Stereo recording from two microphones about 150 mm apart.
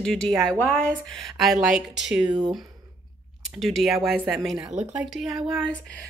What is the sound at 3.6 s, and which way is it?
Speech, centre (ahead or behind).